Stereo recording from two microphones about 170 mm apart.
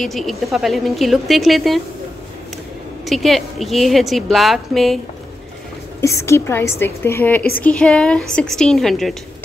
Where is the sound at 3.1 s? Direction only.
Centre (ahead or behind).